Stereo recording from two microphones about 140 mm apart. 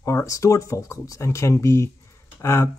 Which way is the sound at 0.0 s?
20° left (ahead or behind).